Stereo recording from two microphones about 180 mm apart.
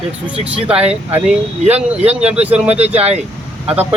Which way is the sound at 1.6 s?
35° right (ahead or behind).